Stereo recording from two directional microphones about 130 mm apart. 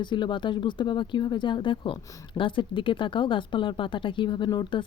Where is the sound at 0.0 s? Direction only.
35° left (ahead or behind).